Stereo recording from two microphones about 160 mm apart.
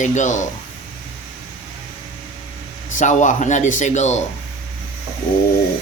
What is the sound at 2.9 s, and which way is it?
Speech, 50° left (ahead or behind).